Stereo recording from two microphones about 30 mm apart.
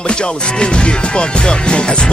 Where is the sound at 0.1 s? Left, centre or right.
Left.